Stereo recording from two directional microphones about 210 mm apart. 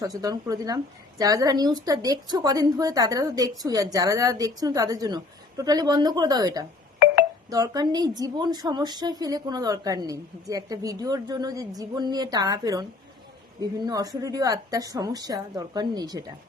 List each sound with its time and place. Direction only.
0.0 s a woman's voice: 15° right (ahead or behind)